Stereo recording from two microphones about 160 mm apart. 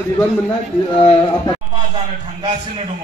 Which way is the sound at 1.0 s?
35° left (ahead or behind).